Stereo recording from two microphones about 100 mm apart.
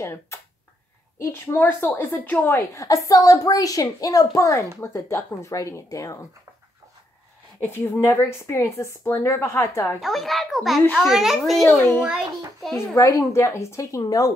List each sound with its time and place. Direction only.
0.0 s a woman's voice: 30° left (ahead or behind)
2.7 s a child's voice: 30° left (ahead or behind)
7.6 s a woman's voice: 25° left (ahead or behind)
9.9 s a child's voice: centre (ahead or behind)
12.7 s a child's voice: 30° left (ahead or behind)